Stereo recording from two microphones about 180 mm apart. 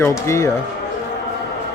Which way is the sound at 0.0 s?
15° left (ahead or behind).